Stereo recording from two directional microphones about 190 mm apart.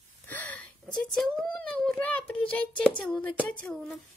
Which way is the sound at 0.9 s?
5° left (ahead or behind).